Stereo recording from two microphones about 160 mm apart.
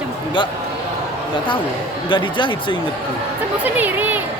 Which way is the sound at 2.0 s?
30° left (ahead or behind).